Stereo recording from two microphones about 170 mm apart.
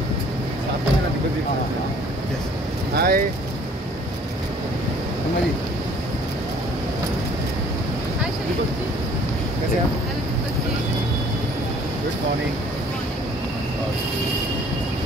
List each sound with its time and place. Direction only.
2.9 s speech: 65° right (ahead or behind)